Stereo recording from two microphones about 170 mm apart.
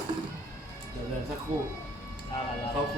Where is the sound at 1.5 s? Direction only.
35° right (ahead or behind).